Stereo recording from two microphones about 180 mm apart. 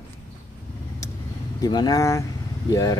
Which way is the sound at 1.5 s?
20° left (ahead or behind).